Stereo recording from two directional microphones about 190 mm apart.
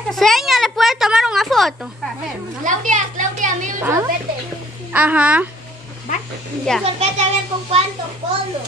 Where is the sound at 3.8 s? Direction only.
10° right (ahead or behind).